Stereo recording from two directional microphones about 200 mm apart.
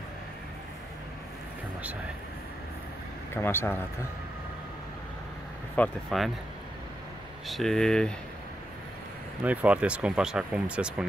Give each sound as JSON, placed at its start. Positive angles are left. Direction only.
{"t": 3.4, "sound": "speech", "side_deg": 10}
{"t": 5.8, "sound": "speech", "side_deg": 0}
{"t": 7.4, "sound": "speech", "side_deg": 0}
{"t": 9.4, "sound": "speech", "side_deg": -5}